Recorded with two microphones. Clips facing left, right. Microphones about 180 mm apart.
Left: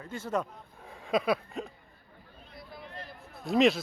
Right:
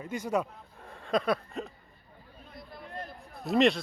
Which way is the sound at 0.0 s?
15° right (ahead or behind).